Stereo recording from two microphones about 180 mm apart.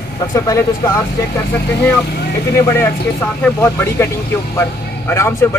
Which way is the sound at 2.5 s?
15° left (ahead or behind).